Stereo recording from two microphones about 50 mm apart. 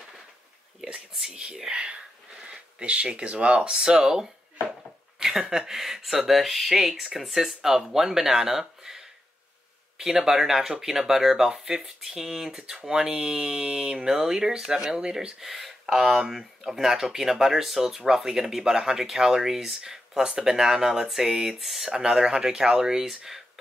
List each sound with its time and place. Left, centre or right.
1.3 s speech: centre